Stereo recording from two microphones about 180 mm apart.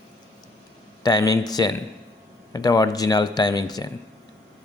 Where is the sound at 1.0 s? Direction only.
20° left (ahead or behind).